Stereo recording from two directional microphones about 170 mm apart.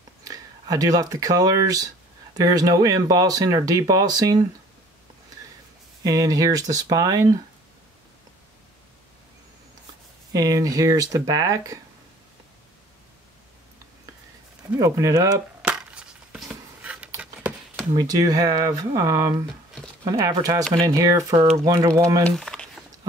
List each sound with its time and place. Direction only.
0.2 s speech: 20° right (ahead or behind)
6.0 s speech: 20° right (ahead or behind)
10.3 s speech: 20° right (ahead or behind)
14.8 s speech: 20° right (ahead or behind)
15.6 s a sound: 5° right (ahead or behind)
17.9 s speech: 20° right (ahead or behind)
22.2 s a sound: 5° left (ahead or behind)